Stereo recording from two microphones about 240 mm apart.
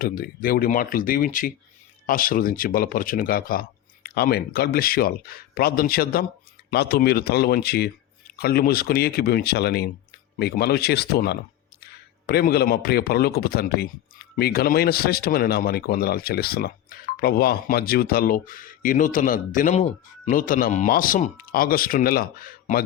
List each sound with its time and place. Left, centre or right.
0.0 s speech: left